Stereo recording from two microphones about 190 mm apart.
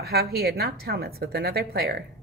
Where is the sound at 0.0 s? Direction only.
55° right (ahead or behind).